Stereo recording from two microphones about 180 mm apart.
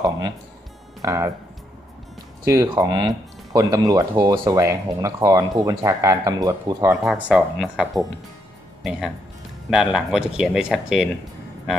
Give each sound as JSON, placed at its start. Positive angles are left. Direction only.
{"t": 1.0, "sound": "speech", "side_deg": -15}
{"t": 2.4, "sound": "speech", "side_deg": -15}
{"t": 7.1, "sound": "speech", "side_deg": -5}
{"t": 9.7, "sound": "speech", "side_deg": -5}